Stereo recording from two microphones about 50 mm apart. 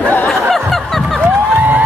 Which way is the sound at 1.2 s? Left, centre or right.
Right.